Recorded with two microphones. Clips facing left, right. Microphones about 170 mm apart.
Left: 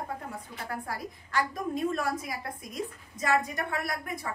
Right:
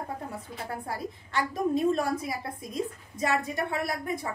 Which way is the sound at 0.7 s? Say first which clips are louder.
Right 1 dB; 25° right (ahead or behind).